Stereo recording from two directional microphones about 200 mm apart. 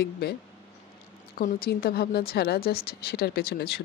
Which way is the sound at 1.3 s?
50° left (ahead or behind).